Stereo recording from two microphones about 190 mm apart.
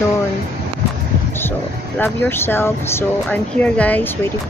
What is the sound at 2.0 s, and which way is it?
Speech, 10° left (ahead or behind).